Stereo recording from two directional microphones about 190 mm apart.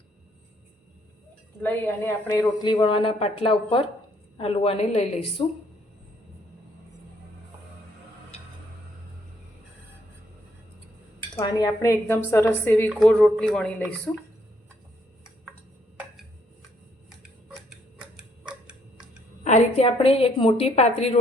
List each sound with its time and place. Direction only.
1.6 s a woman's voice: 10° left (ahead or behind); by 5.3 s 35° left (ahead or behind)
11.3 s speech: 20° left (ahead or behind); by 14.1 s 5° left (ahead or behind)
18.2 s tick-tock: 5° right (ahead or behind)
19.5 s a woman's voice: 35° left (ahead or behind)